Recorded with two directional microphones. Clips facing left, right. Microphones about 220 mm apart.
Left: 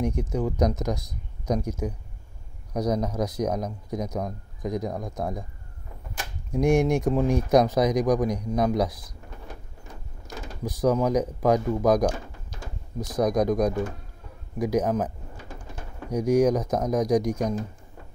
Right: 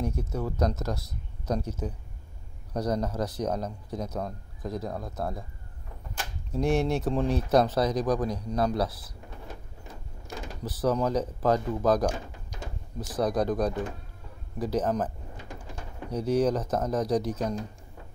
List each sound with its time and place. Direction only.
0.0 s speech: 15° left (ahead or behind)
6.5 s speech: 15° left (ahead or behind)
10.6 s speech: 10° left (ahead or behind)
13.1 s speech: 10° left (ahead or behind)